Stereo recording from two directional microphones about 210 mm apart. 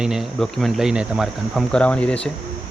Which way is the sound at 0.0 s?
Centre (ahead or behind).